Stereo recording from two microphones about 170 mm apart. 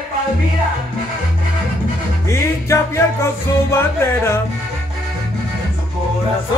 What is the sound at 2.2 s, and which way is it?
Music, 15° left (ahead or behind).